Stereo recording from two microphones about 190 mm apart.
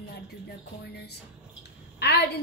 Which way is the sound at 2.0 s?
60° left (ahead or behind).